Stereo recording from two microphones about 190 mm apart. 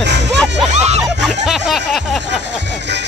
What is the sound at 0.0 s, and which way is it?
Music, 65° right (ahead or behind).